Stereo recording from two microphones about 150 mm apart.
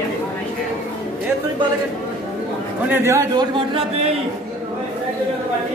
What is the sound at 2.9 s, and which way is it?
Speech, 15° right (ahead or behind).